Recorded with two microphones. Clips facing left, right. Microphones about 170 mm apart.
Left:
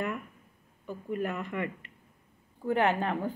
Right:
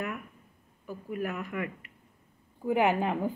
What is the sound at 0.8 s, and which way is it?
A woman's voice, 5° right (ahead or behind).